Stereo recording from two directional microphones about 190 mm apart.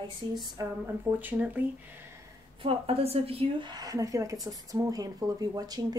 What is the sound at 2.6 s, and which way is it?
A woman's voice, 30° right (ahead or behind).